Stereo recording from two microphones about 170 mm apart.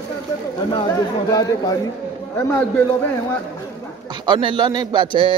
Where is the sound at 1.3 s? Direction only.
20° left (ahead or behind).